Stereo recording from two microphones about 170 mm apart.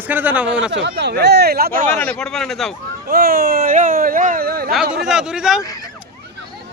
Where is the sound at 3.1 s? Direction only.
60° right (ahead or behind).